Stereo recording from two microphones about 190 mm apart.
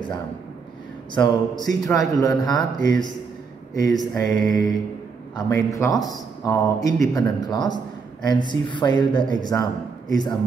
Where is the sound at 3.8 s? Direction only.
20° left (ahead or behind).